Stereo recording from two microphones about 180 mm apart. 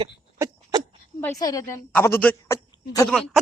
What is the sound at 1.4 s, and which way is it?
A man's voice, 20° left (ahead or behind).